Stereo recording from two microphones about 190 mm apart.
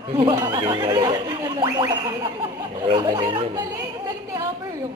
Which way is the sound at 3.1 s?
20° right (ahead or behind).